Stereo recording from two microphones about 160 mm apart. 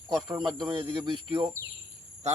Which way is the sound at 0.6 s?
30° right (ahead or behind).